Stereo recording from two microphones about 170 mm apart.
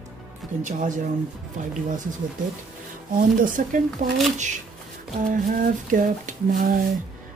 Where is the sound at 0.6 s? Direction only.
50° right (ahead or behind).